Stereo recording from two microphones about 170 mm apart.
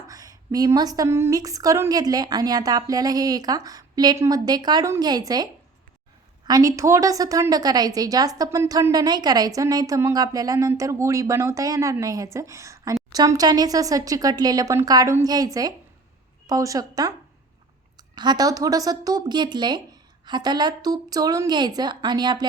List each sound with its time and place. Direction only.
0.1 s a woman's voice: 20° right (ahead or behind)
6.5 s a woman's voice: 20° right (ahead or behind)